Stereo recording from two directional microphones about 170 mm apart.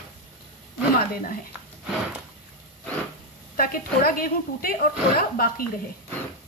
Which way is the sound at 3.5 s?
60° left (ahead or behind).